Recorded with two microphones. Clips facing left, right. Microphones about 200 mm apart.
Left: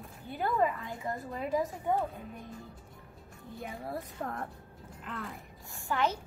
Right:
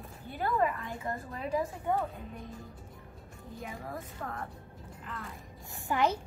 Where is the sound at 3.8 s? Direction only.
35° left (ahead or behind).